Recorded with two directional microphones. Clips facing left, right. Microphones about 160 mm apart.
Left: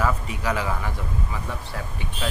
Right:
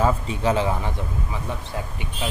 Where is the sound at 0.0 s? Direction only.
25° right (ahead or behind).